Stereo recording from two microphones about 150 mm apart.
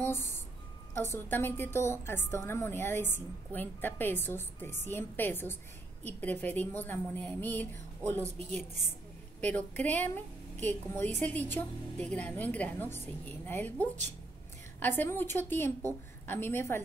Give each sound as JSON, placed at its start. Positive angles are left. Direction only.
{"t": 0.0, "sound": "music", "side_deg": 15}
{"t": 1.1, "sound": "a woman's voice", "side_deg": 15}
{"t": 8.3, "sound": "a woman's voice", "side_deg": -45}
{"t": 9.4, "sound": "a woman's voice", "side_deg": 10}